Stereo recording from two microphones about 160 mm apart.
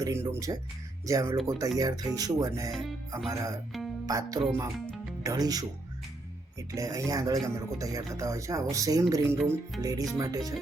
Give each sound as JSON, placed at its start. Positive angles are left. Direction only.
{"t": 0.0, "sound": "speech", "side_deg": -15}
{"t": 6.7, "sound": "speech", "side_deg": -20}